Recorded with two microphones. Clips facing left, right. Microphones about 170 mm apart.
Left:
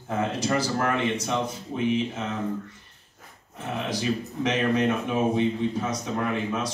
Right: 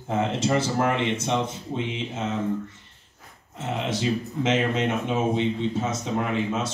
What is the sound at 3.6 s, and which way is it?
Speech, 25° right (ahead or behind).